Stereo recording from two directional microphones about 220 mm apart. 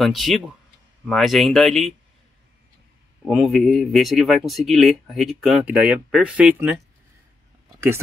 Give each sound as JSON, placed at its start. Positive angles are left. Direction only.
{"t": 0.0, "sound": "speech", "side_deg": 0}
{"t": 3.3, "sound": "speech", "side_deg": 0}